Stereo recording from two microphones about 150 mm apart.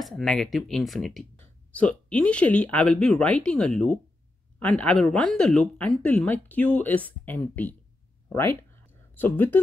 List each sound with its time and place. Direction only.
0.0 s speech: centre (ahead or behind)